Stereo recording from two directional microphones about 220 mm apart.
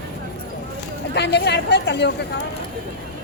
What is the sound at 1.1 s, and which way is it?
Speech, 50° left (ahead or behind).